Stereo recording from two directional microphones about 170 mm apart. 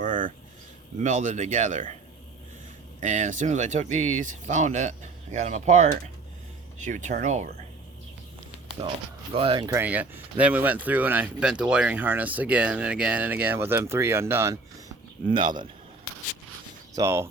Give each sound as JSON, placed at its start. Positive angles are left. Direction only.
{"t": 0.0, "sound": "a sound", "side_deg": -50}
{"t": 0.9, "sound": "speech", "side_deg": -45}
{"t": 3.0, "sound": "speech", "side_deg": -45}
{"t": 8.8, "sound": "speech", "side_deg": -25}
{"t": 9.6, "sound": "speech", "side_deg": -10}
{"t": 16.9, "sound": "speech", "side_deg": -15}